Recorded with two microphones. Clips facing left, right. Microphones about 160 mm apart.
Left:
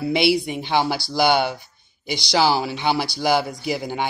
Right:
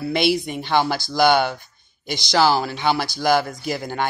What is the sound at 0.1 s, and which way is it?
Speech, 10° left (ahead or behind).